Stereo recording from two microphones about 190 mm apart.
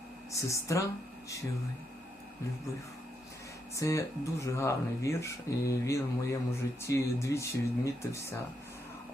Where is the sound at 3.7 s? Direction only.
15° left (ahead or behind).